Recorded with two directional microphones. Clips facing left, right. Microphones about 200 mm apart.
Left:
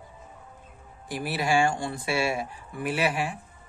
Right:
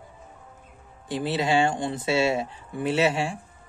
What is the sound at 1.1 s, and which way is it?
Speech, 25° right (ahead or behind).